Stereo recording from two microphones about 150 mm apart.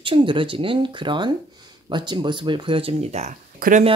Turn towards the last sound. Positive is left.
turn(degrees=-70)  # may be behind; listen again after turning